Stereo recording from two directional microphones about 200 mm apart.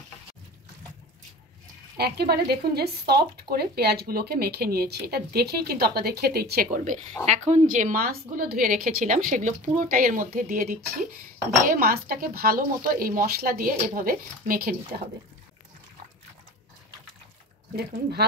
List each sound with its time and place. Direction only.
2.0 s speech: 50° right (ahead or behind)